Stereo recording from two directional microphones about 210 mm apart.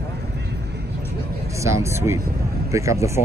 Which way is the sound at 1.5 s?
15° right (ahead or behind).